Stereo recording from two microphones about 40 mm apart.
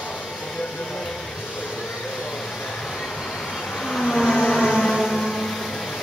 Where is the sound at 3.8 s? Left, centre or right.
Centre.